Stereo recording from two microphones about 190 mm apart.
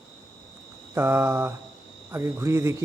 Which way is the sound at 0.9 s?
10° right (ahead or behind).